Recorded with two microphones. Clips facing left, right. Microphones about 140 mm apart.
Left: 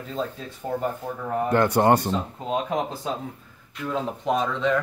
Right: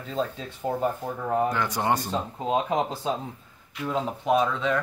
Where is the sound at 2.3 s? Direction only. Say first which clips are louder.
Right 2 dB; 20° right (ahead or behind).